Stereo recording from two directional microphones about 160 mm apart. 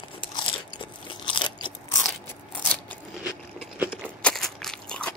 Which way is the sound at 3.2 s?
10° right (ahead or behind).